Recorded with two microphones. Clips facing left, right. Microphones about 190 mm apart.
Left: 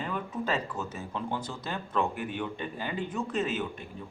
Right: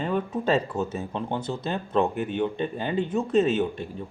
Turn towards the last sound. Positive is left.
turn(degrees=-25)  # may be behind; listen again after turning